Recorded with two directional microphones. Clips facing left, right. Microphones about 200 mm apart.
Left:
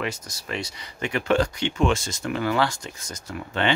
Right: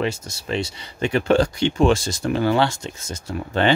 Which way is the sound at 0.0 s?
25° right (ahead or behind).